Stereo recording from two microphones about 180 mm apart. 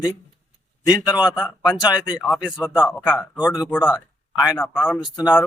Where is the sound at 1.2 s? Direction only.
5° right (ahead or behind).